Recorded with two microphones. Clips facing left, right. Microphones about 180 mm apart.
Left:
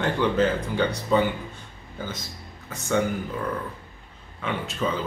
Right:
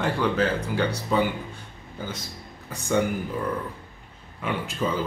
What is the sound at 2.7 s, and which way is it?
Speech, 10° right (ahead or behind).